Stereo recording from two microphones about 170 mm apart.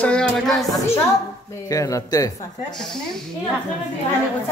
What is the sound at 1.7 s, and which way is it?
Speech, 20° left (ahead or behind).